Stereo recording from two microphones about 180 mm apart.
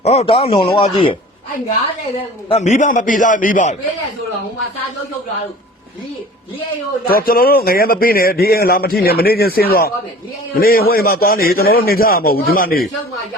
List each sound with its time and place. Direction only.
0.0 s speech: 35° left (ahead or behind)
2.5 s a man's voice: 40° left (ahead or behind)
7.1 s a man's voice: 55° left (ahead or behind)